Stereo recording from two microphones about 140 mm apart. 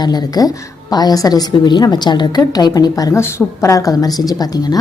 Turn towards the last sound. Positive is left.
turn(degrees=25)  # may be behind; listen again after turning